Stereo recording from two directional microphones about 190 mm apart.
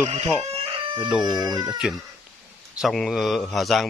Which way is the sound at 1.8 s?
5° right (ahead or behind).